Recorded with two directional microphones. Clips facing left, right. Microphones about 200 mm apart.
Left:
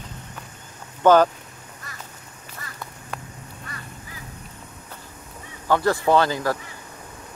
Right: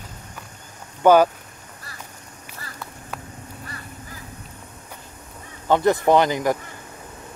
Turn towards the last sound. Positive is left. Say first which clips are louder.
# right 2 dB
turn(degrees=-20)  # may be behind; listen again after turning